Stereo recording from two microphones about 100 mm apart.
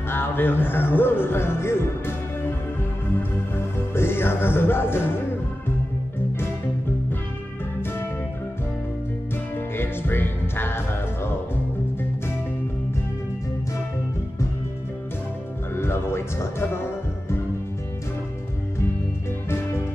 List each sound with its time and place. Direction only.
0.1 s speech: 20° left (ahead or behind)
3.2 s speech: 25° left (ahead or behind)
9.8 s music: 20° left (ahead or behind)
15.7 s music: 25° left (ahead or behind)